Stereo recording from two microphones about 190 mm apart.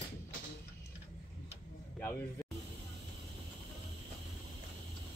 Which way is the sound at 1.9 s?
10° left (ahead or behind).